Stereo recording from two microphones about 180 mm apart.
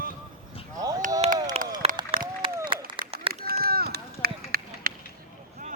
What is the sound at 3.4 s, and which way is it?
Run, 60° right (ahead or behind).